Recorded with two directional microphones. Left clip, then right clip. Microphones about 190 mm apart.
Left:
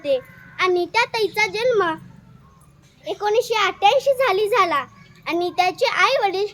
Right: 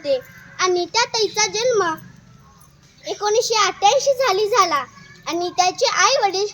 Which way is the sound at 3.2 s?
Centre (ahead or behind).